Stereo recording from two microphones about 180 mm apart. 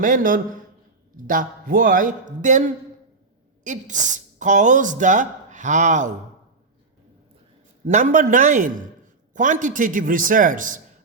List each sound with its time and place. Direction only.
0.0 s a man's voice: 45° right (ahead or behind)
7.9 s a man's voice: 45° right (ahead or behind)